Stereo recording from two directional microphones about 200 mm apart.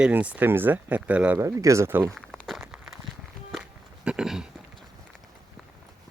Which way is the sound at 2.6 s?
5° right (ahead or behind).